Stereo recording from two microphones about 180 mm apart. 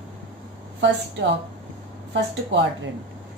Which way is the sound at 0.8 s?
80° right.